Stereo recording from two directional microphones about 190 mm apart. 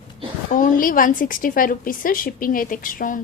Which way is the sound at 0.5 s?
45° left (ahead or behind).